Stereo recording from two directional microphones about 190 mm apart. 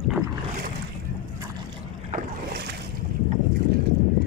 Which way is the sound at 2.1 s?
50° right (ahead or behind).